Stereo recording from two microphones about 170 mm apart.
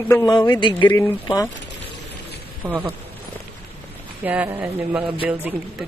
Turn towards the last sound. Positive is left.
turn(degrees=-10)  # may be behind; listen again after turning